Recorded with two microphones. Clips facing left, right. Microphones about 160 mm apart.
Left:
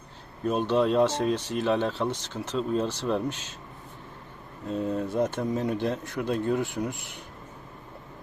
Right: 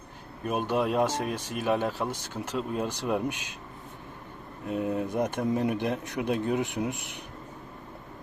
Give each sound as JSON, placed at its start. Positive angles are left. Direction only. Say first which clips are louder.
{"t": 0.4, "sound": "speech", "louder": "left 3 dB", "side_deg": -10}
{"t": 4.6, "sound": "speech", "louder": "even", "side_deg": -15}